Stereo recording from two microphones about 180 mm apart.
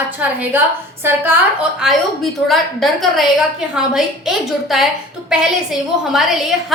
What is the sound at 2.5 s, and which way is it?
A woman's voice, centre (ahead or behind).